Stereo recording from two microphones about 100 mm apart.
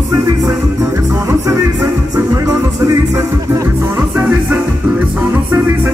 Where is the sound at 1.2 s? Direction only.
30° right (ahead or behind).